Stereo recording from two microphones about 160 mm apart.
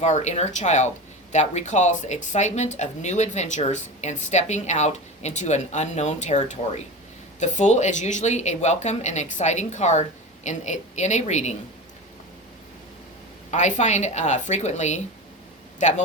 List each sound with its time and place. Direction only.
0.0 s speech: 45° left (ahead or behind)
13.5 s speech: 50° left (ahead or behind)